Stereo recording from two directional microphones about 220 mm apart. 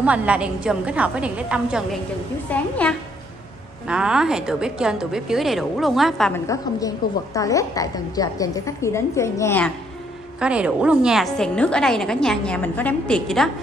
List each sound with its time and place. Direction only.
0.0 s a woman's voice: 5° right (ahead or behind)
6.4 s a woman's voice: 15° left (ahead or behind)
10.4 s a woman's voice: 5° right (ahead or behind)